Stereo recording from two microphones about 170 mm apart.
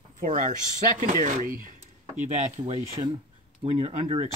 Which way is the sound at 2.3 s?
45° right (ahead or behind).